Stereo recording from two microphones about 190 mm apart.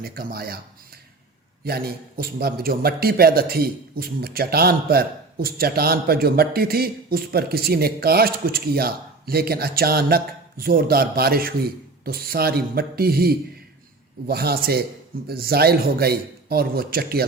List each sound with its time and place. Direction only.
0.0 s a man's voice: 50° right (ahead or behind)
1.6 s a man's voice: 55° right (ahead or behind)